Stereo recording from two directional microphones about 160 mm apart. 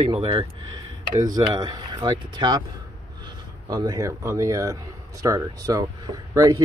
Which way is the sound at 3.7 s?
25° right (ahead or behind).